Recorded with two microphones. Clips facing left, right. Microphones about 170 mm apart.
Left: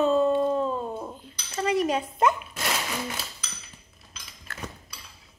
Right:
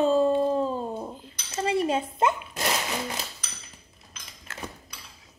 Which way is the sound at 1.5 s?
30° right (ahead or behind).